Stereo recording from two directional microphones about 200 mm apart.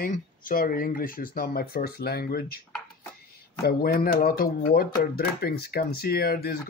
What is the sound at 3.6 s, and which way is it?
Speech, 50° left (ahead or behind).